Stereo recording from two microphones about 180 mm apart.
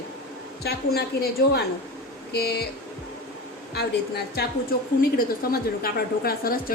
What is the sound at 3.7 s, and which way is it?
A woman's voice, 65° left (ahead or behind).